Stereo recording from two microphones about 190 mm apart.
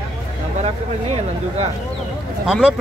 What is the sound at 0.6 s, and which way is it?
Speech, 30° right (ahead or behind).